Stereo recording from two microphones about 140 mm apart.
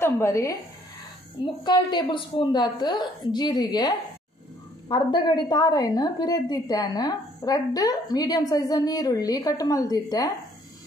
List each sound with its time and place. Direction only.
0.0 s speech: 20° left (ahead or behind)
1.4 s a woman's voice: 30° left (ahead or behind)